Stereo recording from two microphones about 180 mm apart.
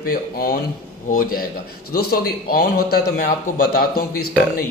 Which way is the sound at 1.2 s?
55° left (ahead or behind).